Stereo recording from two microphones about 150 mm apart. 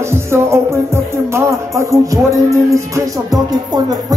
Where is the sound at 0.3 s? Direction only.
20° right (ahead or behind).